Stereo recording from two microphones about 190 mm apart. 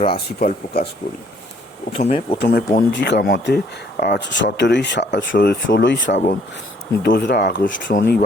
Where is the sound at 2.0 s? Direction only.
35° left (ahead or behind).